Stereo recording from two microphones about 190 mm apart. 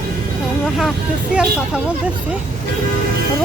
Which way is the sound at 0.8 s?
Centre (ahead or behind).